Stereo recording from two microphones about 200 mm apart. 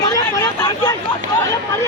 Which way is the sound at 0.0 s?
15° left (ahead or behind).